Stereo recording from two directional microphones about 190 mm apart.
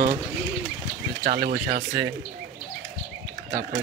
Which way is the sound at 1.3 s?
50° right (ahead or behind).